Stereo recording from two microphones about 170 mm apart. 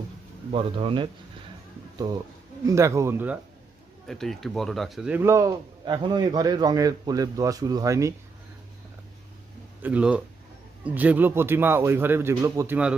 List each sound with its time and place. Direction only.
0.5 s speech: 35° right (ahead or behind)
2.6 s a man's voice: 15° right (ahead or behind)
4.1 s a man's voice: centre (ahead or behind); by 8.1 s 20° right (ahead or behind)
9.8 s a man's voice: 10° right (ahead or behind)